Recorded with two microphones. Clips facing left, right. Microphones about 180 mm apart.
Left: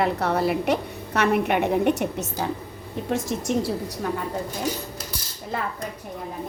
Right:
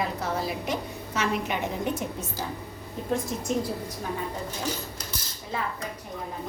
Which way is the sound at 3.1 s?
80° left.